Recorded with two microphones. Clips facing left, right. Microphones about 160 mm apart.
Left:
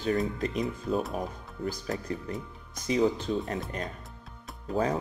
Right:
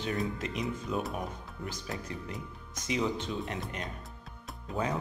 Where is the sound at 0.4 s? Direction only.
35° left (ahead or behind).